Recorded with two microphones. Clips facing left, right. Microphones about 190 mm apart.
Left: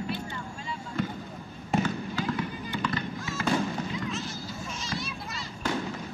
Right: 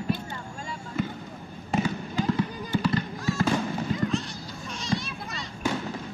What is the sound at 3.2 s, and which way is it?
Fireworks, centre (ahead or behind).